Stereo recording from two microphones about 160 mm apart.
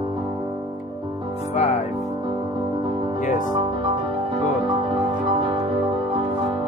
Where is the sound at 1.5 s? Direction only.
45° left (ahead or behind).